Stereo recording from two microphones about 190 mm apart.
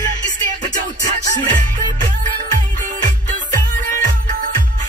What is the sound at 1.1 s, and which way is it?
Music, 20° left (ahead or behind).